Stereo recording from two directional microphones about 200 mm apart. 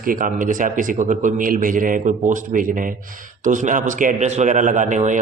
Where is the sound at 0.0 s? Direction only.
45° right (ahead or behind).